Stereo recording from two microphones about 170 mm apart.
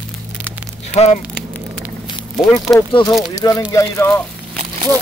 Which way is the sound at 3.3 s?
20° left (ahead or behind).